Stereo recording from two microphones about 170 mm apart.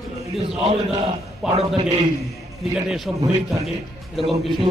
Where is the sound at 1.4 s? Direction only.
Centre (ahead or behind).